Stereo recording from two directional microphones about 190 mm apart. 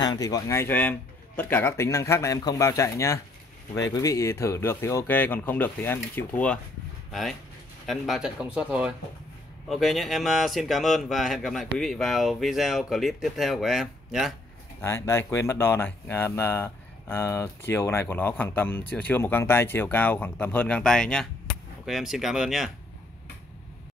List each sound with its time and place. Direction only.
0.0 s speech: 20° left (ahead or behind); by 14.3 s centre (ahead or behind)
14.8 s speech: 15° left (ahead or behind); by 22.7 s centre (ahead or behind)